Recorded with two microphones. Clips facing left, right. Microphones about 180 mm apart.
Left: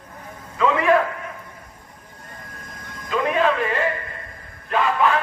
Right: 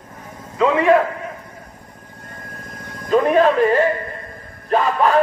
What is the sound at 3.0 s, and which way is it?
A man's voice, 40° right (ahead or behind).